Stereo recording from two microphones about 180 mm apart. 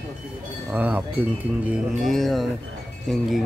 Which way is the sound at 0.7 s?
10° right (ahead or behind).